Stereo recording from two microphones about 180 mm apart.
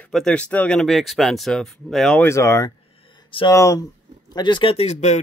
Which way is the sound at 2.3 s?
15° left (ahead or behind).